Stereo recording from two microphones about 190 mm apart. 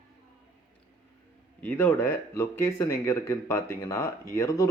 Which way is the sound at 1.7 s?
10° left (ahead or behind).